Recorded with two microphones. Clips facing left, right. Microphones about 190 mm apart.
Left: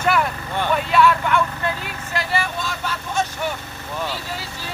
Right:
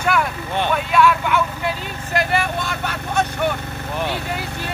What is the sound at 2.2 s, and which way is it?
Speech, 60° right (ahead or behind).